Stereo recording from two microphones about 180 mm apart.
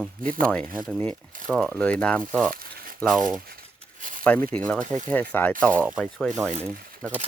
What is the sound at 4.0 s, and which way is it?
Tearing, 50° right (ahead or behind).